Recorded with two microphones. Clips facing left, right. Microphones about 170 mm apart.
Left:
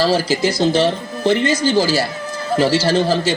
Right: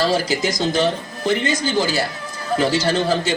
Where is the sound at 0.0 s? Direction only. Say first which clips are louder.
Left 3 dB; 35° left (ahead or behind).